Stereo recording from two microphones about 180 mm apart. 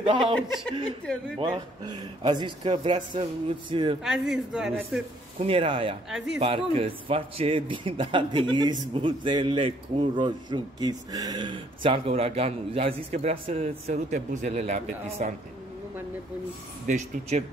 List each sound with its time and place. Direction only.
0.0 s a man's voice: 30° right (ahead or behind)
1.4 s a man's voice: 25° right (ahead or behind)
4.0 s speech: centre (ahead or behind)
5.4 s a man's voice: 30° right (ahead or behind)
16.8 s speech: 40° right (ahead or behind)